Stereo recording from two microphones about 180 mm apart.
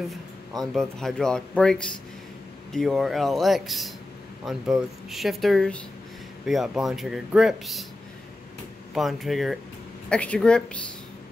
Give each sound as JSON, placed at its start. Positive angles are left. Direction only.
{"t": 0.6, "sound": "speech", "side_deg": 0}
{"t": 8.9, "sound": "speech", "side_deg": 0}